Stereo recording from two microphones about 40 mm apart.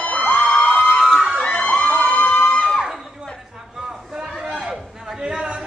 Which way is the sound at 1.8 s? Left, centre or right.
Left.